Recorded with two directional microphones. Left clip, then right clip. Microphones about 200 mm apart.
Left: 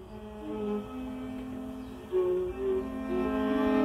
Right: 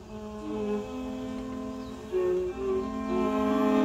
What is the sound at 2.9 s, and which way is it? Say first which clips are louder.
Music: right 3 dB; 20° right (ahead or behind).